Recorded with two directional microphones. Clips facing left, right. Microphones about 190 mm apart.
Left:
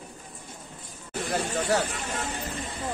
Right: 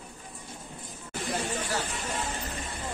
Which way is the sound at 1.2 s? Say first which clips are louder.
Left 4 dB; 65° left (ahead or behind).